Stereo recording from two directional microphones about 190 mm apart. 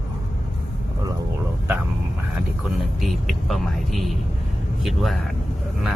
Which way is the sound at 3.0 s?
Centre (ahead or behind).